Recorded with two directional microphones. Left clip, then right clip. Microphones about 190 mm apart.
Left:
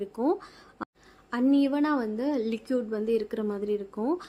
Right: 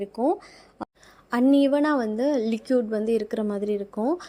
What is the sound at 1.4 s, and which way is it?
A woman's voice, 25° right (ahead or behind).